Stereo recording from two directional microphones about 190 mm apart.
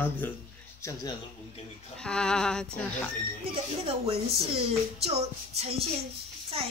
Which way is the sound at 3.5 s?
30° right (ahead or behind).